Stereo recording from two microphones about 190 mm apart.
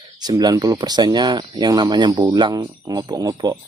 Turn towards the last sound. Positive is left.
turn(degrees=-20)  # may be behind; listen again after turning